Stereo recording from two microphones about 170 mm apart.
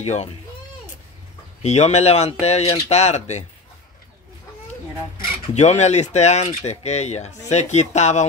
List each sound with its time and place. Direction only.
0.0 s speech: 40° left (ahead or behind)
1.6 s speech: 40° left (ahead or behind)
5.1 s a sound: 60° left (ahead or behind)
5.5 s speech: 40° left (ahead or behind)